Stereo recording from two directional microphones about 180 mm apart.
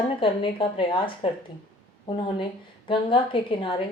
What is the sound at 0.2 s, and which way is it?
A woman's voice, 30° left (ahead or behind).